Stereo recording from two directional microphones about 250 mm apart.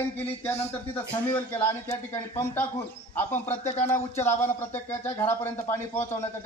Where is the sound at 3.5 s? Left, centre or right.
Left.